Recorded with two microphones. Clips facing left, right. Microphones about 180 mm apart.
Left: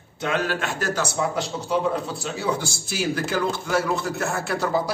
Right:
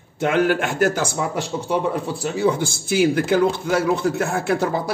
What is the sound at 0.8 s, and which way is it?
Speech, 50° right (ahead or behind).